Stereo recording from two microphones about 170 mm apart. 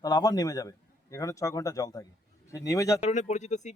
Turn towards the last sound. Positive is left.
turn(degrees=45)  # may be behind; listen again after turning